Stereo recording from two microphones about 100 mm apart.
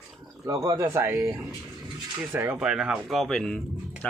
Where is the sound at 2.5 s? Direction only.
5° right (ahead or behind); by 4.2 s 10° left (ahead or behind).